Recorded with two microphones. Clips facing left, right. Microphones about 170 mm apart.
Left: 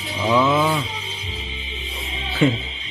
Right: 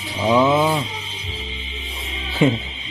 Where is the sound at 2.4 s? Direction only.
20° right (ahead or behind).